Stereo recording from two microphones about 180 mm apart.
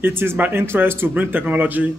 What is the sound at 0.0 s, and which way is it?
A man's voice, 15° right (ahead or behind).